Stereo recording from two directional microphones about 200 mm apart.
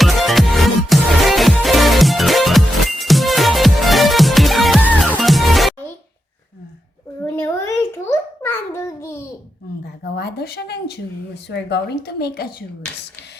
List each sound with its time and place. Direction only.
0.0 s music: centre (ahead or behind)
7.3 s a sound: 10° left (ahead or behind)
9.8 s speech: 55° left (ahead or behind)